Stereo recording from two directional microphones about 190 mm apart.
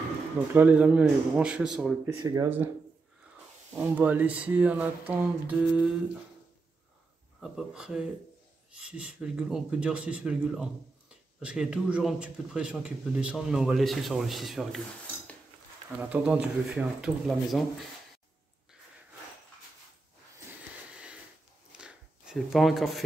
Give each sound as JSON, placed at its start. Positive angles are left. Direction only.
{"t": 0.6, "sound": "speech", "side_deg": -5}
{"t": 2.2, "sound": "speech", "side_deg": -20}
{"t": 3.7, "sound": "speech", "side_deg": -10}
{"t": 7.3, "sound": "speech", "side_deg": 0}
{"t": 16.0, "sound": "speech", "side_deg": -5}
{"t": 20.9, "sound": "sniff", "side_deg": -5}
{"t": 21.7, "sound": "a sound", "side_deg": -5}